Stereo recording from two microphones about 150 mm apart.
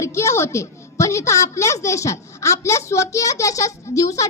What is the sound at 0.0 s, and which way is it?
A woman's voice, 20° left (ahead or behind).